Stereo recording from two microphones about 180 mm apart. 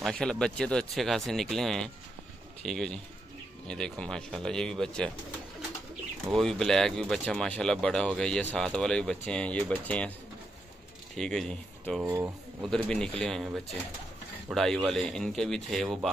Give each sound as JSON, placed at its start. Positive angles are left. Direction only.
{"t": 0.0, "sound": "speech", "side_deg": 5}
{"t": 6.2, "sound": "speech", "side_deg": 0}
{"t": 11.1, "sound": "speech", "side_deg": 0}
{"t": 12.0, "sound": "speech", "side_deg": -15}
{"t": 12.6, "sound": "speech", "side_deg": 5}